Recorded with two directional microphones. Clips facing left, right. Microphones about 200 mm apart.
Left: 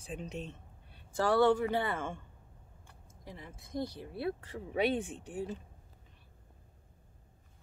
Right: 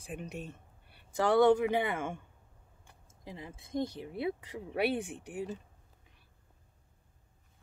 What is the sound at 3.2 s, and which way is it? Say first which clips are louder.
Speech: right 3 dB; 20° right (ahead or behind).